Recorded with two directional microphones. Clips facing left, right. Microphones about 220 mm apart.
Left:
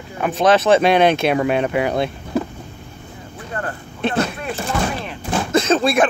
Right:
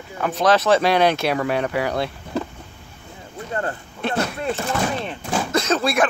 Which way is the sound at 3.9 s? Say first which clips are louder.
Left 4 dB; 25° left (ahead or behind).